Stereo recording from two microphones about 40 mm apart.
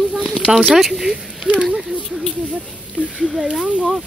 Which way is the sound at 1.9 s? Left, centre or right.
Right.